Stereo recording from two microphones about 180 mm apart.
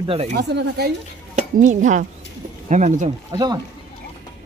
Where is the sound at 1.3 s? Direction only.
45° right (ahead or behind).